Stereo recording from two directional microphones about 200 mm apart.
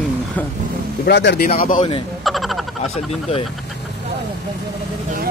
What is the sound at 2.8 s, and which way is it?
Speech, 30° left (ahead or behind).